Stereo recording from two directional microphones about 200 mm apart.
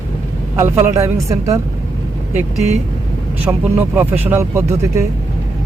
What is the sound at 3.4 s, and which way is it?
Speech, 10° right (ahead or behind).